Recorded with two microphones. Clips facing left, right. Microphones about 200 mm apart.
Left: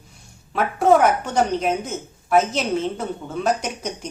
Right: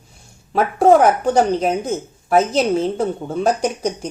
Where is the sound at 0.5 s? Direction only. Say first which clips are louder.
Right 4 dB; 35° right (ahead or behind).